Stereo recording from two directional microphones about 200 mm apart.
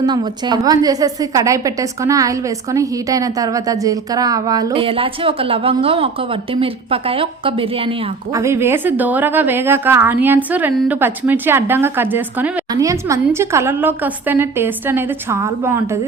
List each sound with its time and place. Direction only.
0.0 s a woman's voice: 20° right (ahead or behind)
8.4 s a woman's voice: 15° right (ahead or behind)